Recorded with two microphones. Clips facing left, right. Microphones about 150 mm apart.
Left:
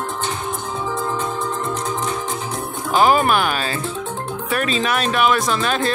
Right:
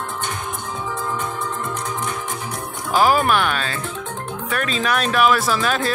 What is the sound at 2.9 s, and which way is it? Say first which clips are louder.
Speech: left 1 dB; 5° right (ahead or behind).